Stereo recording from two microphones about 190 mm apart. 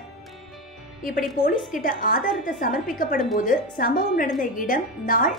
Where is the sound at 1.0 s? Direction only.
45° left (ahead or behind).